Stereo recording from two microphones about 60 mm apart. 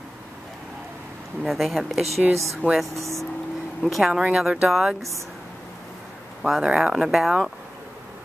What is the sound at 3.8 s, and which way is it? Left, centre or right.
Speech, centre.